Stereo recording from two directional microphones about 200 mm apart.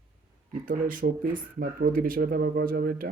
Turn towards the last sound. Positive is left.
turn(degrees=-45)  # may be behind; listen again after turning